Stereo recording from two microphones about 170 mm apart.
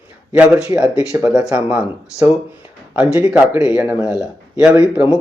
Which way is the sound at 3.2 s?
5° right (ahead or behind).